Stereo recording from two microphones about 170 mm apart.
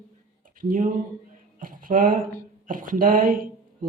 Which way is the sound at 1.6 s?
55° right (ahead or behind).